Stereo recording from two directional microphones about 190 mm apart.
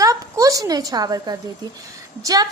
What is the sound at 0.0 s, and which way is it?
A woman's voice, 15° right (ahead or behind).